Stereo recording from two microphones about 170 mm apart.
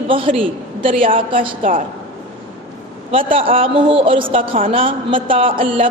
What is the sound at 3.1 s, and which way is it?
Speech, 35° right (ahead or behind).